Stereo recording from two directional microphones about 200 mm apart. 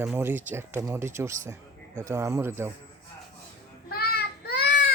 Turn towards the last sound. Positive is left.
turn(degrees=50)  # may be behind; listen again after turning